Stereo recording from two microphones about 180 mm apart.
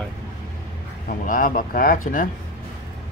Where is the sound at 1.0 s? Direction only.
50° left (ahead or behind).